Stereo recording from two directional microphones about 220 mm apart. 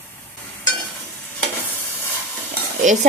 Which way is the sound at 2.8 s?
35° right (ahead or behind).